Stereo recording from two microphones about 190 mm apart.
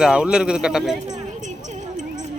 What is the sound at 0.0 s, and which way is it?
Speech, 5° right (ahead or behind).